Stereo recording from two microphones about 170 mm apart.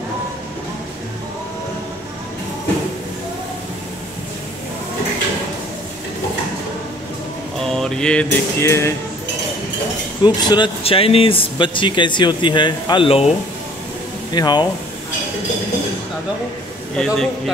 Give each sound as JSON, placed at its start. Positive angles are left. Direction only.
{"t": 7.6, "sound": "a sound", "side_deg": 0}
{"t": 10.2, "sound": "speech", "side_deg": 25}
{"t": 14.3, "sound": "speech", "side_deg": 25}
{"t": 16.9, "sound": "a man's voice", "side_deg": 5}